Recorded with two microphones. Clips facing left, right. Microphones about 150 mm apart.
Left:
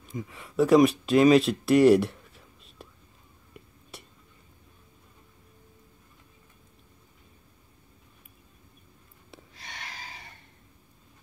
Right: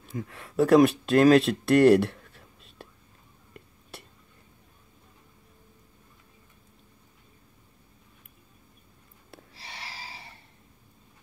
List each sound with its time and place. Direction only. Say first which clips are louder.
0.3 s speech: even; centre (ahead or behind)
3.9 s a sound: right 1 dB; centre (ahead or behind)
9.5 s gasp: even; 30° right (ahead or behind)